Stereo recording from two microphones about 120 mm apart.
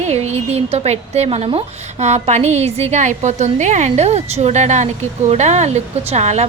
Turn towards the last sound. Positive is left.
turn(degrees=-70)  # may be behind; listen again after turning